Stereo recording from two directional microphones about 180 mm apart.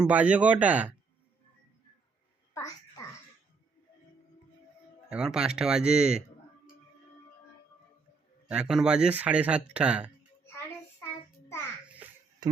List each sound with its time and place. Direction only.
0.0 s speech: 10° right (ahead or behind)
2.6 s babbling: 20° left (ahead or behind)
5.0 s speech: 5° right (ahead or behind)
8.4 s speech: 5° right (ahead or behind)
11.0 s child singing: 15° left (ahead or behind)